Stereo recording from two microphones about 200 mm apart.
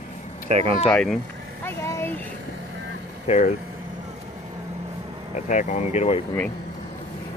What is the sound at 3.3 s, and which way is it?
Speech, 35° left (ahead or behind).